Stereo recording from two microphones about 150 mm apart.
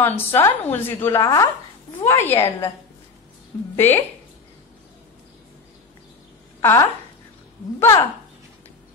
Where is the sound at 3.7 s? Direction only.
15° left (ahead or behind).